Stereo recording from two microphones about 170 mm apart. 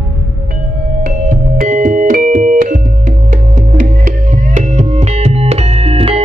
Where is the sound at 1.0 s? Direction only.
55° right (ahead or behind); by 6.2 s 35° right (ahead or behind).